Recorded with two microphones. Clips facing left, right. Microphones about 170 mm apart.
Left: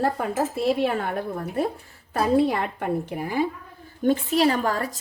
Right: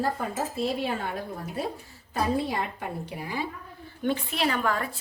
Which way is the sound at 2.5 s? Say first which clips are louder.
Left 6 dB; 55° left (ahead or behind).